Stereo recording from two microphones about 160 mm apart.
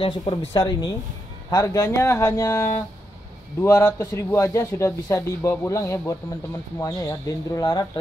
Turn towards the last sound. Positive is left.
turn(degrees=25)  # may be behind; listen again after turning